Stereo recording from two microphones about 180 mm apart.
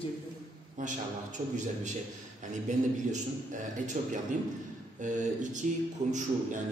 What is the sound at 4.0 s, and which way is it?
A man's voice, 40° right (ahead or behind).